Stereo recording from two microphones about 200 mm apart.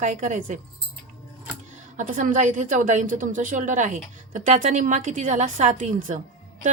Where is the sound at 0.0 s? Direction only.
40° right (ahead or behind).